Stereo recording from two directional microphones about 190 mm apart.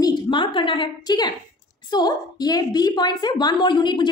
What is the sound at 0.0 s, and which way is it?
A woman's voice, 25° left (ahead or behind).